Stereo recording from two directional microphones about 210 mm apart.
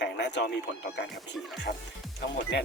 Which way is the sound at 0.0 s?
55° left (ahead or behind).